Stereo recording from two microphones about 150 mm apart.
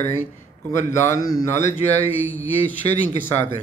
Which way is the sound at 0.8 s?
25° left (ahead or behind).